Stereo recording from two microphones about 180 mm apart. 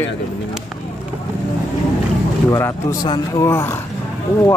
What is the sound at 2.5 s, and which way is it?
Speech, 15° left (ahead or behind).